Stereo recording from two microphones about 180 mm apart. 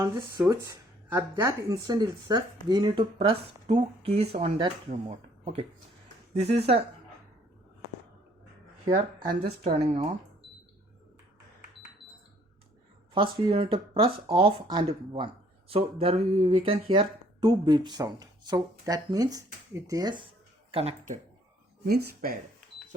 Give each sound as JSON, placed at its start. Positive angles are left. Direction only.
{"t": 0.0, "sound": "speech", "side_deg": -10}
{"t": 9.6, "sound": "speech", "side_deg": -35}
{"t": 13.1, "sound": "speech", "side_deg": -30}
{"t": 21.8, "sound": "speech", "side_deg": -55}